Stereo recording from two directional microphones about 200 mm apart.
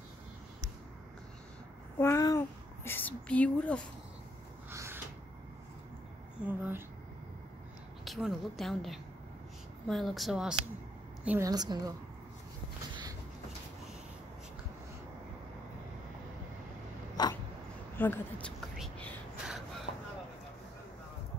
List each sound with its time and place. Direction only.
2.0 s a sound: 15° left (ahead or behind)
4.6 s a sound: 10° right (ahead or behind)
6.4 s speech: 10° right (ahead or behind)
8.0 s a woman's voice: centre (ahead or behind)
11.2 s a woman's voice: 15° right (ahead or behind)
17.2 s dog: 20° left (ahead or behind)
17.9 s speech: 10° left (ahead or behind)
18.8 s whispering: 5° left (ahead or behind)